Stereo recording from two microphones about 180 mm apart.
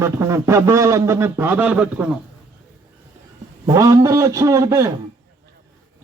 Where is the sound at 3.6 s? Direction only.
20° right (ahead or behind).